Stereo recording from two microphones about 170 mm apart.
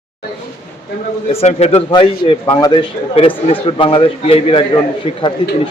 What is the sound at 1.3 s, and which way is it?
A man's voice, 40° left (ahead or behind).